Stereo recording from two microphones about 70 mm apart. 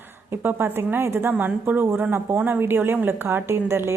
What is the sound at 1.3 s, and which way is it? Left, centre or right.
Speech, right.